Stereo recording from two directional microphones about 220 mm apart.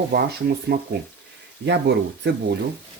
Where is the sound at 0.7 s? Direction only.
45° right (ahead or behind).